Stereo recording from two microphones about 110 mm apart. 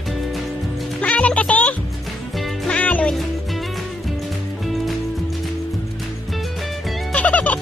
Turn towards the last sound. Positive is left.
turn(degrees=15)  # may be behind; listen again after turning